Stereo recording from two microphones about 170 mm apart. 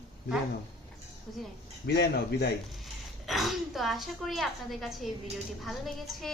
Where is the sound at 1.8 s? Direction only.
80° left.